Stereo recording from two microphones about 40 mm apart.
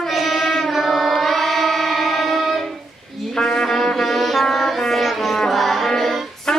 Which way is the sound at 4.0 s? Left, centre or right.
Centre.